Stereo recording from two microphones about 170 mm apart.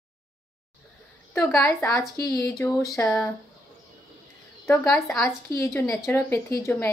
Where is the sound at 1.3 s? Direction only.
15° left (ahead or behind).